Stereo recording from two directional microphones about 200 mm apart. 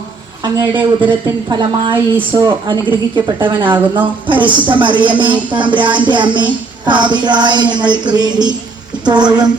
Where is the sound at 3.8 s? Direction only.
10° right (ahead or behind).